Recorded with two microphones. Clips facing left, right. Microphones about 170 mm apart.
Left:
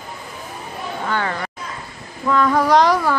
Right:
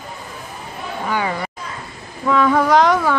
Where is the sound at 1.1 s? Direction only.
10° right (ahead or behind).